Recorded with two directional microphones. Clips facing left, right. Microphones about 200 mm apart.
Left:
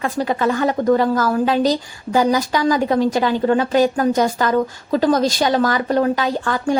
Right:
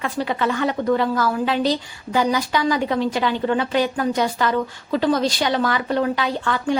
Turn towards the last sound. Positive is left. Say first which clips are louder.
# left 2 dB
turn(degrees=45)  # may be behind; listen again after turning